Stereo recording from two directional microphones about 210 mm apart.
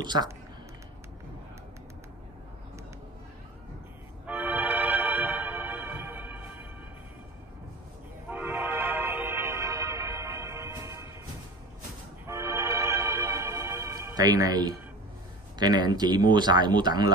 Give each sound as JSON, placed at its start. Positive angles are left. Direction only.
{"t": 0.0, "sound": "speech", "side_deg": -20}
{"t": 4.3, "sound": "music", "side_deg": -10}
{"t": 8.3, "sound": "music", "side_deg": -10}
{"t": 12.3, "sound": "music", "side_deg": -15}
{"t": 15.6, "sound": "speech", "side_deg": -20}